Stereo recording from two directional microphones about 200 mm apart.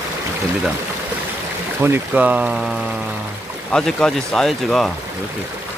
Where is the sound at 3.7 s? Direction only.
5° left (ahead or behind).